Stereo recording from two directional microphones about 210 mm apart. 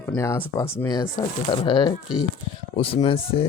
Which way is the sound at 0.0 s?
15° left (ahead or behind).